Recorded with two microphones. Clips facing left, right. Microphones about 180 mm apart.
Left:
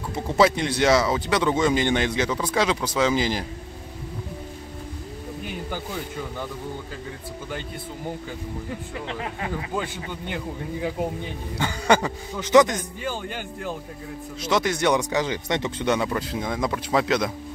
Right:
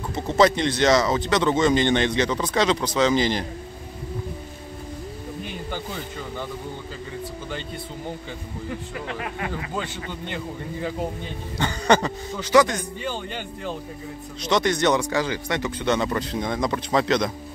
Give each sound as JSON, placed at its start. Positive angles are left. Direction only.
{"t": 0.1, "sound": "speech", "side_deg": 5}
{"t": 9.0, "sound": "speech", "side_deg": 25}
{"t": 9.8, "sound": "speech", "side_deg": 10}
{"t": 12.4, "sound": "speech", "side_deg": 20}
{"t": 13.0, "sound": "speech", "side_deg": 5}